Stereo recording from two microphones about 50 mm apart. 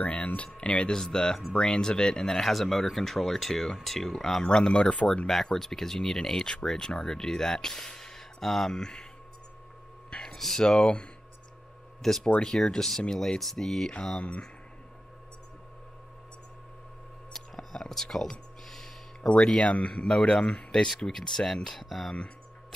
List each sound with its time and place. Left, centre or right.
0.0 s speech: left; by 9.0 s centre
10.1 s speech: centre
17.3 s whispering: centre
19.2 s speech: centre